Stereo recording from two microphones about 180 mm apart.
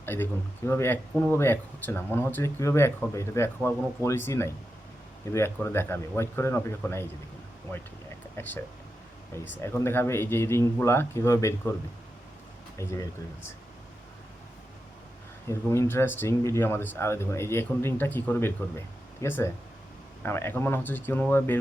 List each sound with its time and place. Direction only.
0.0 s speech: 10° left (ahead or behind)
8.4 s speech: 15° left (ahead or behind)
9.6 s speech: 15° left (ahead or behind)
15.4 s speech: 15° left (ahead or behind)